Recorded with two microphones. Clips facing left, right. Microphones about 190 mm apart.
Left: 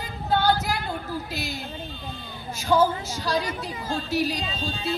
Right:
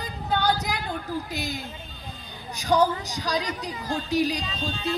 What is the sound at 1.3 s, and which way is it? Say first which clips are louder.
Speech: right 1 dB; 20° right (ahead or behind).